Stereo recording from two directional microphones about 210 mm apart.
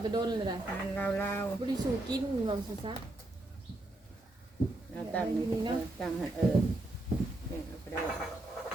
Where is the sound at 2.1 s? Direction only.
20° right (ahead or behind).